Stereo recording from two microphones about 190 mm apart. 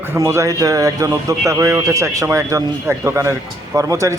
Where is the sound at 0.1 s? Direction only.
15° right (ahead or behind).